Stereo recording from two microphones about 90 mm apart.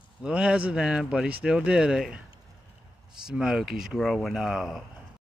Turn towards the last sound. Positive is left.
turn(degrees=-5)  # may be behind; listen again after turning